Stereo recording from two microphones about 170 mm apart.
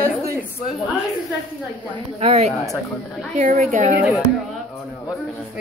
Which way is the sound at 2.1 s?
40° right (ahead or behind).